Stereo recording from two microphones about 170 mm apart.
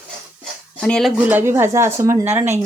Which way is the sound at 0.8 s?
5° left (ahead or behind).